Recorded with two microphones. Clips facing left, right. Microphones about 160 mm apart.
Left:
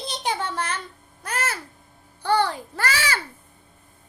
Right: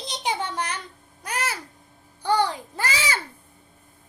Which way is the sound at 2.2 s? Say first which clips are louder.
Left 1 dB; 15° right (ahead or behind).